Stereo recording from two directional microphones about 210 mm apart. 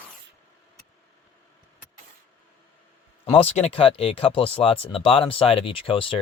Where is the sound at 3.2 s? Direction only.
25° left (ahead or behind).